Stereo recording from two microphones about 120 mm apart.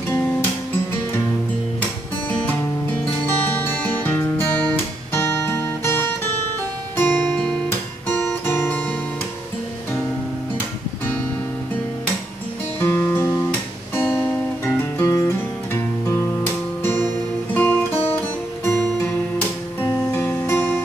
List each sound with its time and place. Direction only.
3.3 s music: 15° left (ahead or behind)
12.8 s music: 20° left (ahead or behind)
16.8 s guitar: 15° left (ahead or behind)
19.8 s music: 20° left (ahead or behind)